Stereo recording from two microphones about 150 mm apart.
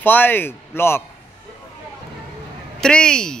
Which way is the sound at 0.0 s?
15° left (ahead or behind).